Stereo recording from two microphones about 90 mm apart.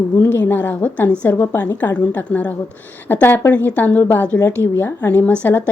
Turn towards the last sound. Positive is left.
turn(degrees=20)  # may be behind; listen again after turning